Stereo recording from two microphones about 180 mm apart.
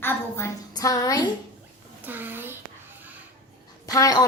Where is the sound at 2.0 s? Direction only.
10° right (ahead or behind).